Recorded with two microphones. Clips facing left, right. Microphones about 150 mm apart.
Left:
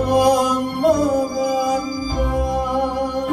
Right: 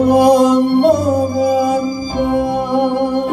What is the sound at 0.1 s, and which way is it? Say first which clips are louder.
Music: right 5 dB; 25° right (ahead or behind).